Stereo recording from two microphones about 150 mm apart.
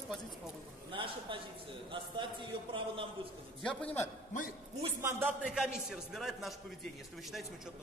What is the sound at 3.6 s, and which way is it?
Music, 10° left (ahead or behind).